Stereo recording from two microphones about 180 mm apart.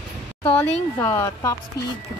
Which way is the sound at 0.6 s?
10° left (ahead or behind).